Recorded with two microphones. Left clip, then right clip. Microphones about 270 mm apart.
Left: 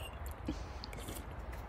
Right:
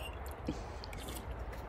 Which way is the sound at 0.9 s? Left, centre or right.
Left.